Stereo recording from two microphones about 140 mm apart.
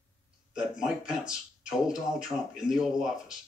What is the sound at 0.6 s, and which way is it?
Speech, 5° right (ahead or behind).